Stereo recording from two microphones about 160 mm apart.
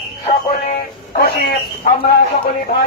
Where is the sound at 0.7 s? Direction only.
75° left (ahead or behind).